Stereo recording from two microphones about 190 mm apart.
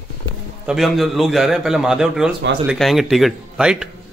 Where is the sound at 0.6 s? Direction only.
Centre (ahead or behind).